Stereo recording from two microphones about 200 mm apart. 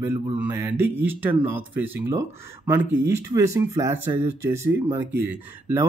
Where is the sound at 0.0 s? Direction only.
10° right (ahead or behind).